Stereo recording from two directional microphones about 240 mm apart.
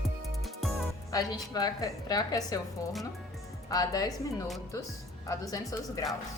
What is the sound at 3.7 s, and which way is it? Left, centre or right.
A woman's voice, centre.